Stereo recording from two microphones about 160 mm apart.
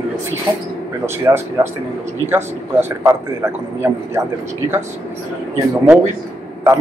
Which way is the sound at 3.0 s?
15° right (ahead or behind).